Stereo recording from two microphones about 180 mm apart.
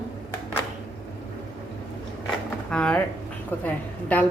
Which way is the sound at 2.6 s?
5° left (ahead or behind).